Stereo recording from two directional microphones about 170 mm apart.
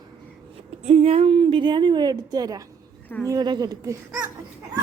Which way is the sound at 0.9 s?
40° right (ahead or behind).